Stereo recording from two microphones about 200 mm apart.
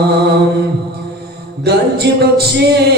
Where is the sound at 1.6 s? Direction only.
55° right (ahead or behind).